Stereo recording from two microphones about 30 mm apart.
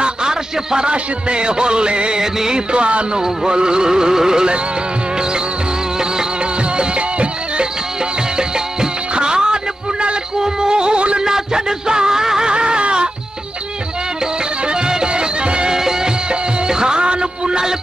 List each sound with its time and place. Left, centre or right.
0.0 s a sound: right
0.8 s music: right
2.1 s music: right
2.7 s music: right
3.2 s music: right
6.8 s music: right
8.4 s music: right
11.2 s music: right
12.4 s a sound: right
14.7 s music: right
15.8 s music: centre